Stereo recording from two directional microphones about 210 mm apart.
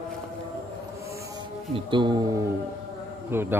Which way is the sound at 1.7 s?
25° right (ahead or behind).